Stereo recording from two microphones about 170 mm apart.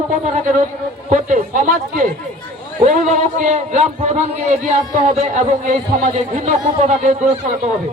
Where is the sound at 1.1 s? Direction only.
50° right (ahead or behind).